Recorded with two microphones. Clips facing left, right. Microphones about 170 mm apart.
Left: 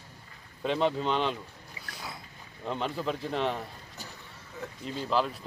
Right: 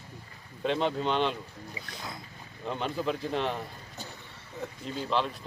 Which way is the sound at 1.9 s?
5° left (ahead or behind).